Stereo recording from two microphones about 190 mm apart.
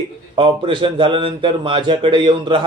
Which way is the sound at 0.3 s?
25° right (ahead or behind).